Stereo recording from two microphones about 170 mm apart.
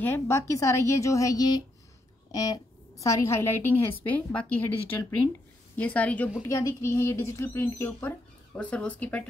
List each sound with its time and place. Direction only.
0.0 s a woman's voice: 15° left (ahead or behind)